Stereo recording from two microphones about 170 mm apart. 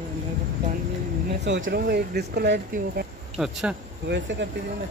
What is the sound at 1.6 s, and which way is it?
Speech, 65° right (ahead or behind).